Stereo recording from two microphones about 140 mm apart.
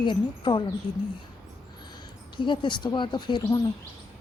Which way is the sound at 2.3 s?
35° left (ahead or behind).